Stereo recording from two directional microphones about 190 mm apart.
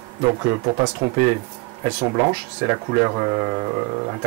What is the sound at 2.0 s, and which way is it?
Speech, 25° right (ahead or behind).